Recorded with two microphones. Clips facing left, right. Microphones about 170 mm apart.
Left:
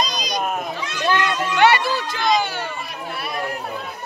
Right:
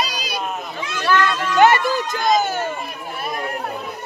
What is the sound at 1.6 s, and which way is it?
Speech, 45° right (ahead or behind).